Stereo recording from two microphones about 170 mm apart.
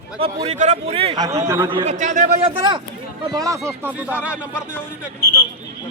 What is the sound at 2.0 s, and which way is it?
Speech, 45° right (ahead or behind).